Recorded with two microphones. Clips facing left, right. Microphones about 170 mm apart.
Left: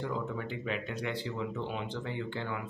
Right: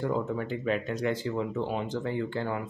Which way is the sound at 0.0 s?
40° right (ahead or behind).